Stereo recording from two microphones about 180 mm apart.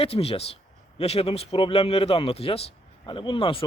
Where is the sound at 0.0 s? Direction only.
35° left (ahead or behind).